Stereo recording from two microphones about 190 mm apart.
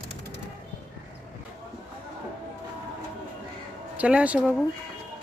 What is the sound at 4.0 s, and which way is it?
Speech, 5° right (ahead or behind).